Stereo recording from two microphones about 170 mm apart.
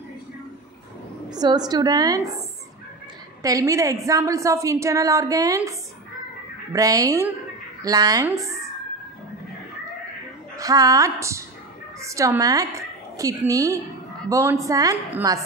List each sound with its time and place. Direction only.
1.3 s a woman's voice: 25° right (ahead or behind)
3.4 s a woman's voice: 20° right (ahead or behind)
10.5 s a woman's voice: 20° right (ahead or behind)